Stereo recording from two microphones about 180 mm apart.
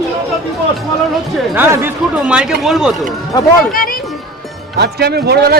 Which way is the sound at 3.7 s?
55° left (ahead or behind).